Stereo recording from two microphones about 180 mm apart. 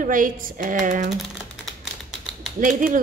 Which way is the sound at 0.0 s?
50° right (ahead or behind).